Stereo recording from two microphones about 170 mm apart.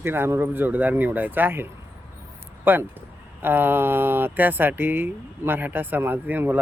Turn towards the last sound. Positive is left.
turn(degrees=-10)  # may be behind; listen again after turning